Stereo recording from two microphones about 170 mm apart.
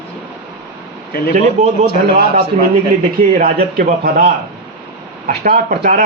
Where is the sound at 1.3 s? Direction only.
45° right (ahead or behind).